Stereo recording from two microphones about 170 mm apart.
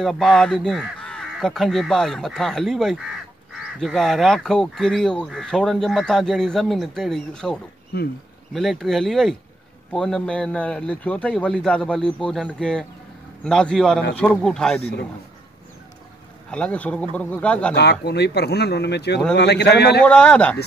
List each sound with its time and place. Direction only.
0.0 s speech: centre (ahead or behind)
7.9 s speech: 70° left (ahead or behind)
8.5 s speech: centre (ahead or behind)
16.4 s speech: 5° left (ahead or behind)
17.7 s speech: 75° left (ahead or behind)
20.1 s speech: 5° left (ahead or behind)